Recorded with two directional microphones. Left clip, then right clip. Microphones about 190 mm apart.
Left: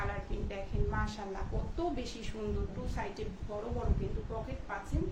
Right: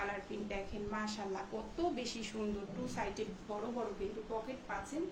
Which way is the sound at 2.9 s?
10° left (ahead or behind).